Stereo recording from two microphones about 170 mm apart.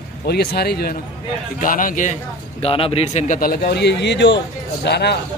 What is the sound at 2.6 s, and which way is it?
Speech, 35° left (ahead or behind).